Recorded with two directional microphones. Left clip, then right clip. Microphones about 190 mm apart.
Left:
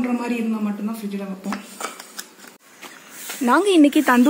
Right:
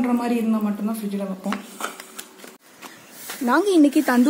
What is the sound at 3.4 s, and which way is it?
Speech, 25° left (ahead or behind).